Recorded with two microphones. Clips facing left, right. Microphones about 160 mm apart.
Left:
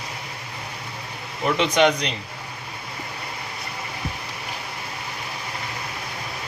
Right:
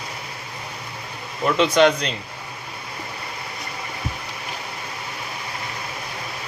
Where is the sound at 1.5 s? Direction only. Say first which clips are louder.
Right 3 dB; 15° left (ahead or behind).